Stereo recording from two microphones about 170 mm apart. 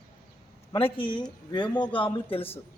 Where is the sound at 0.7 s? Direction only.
30° left (ahead or behind).